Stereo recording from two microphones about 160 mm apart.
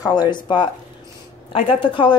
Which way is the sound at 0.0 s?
25° left (ahead or behind).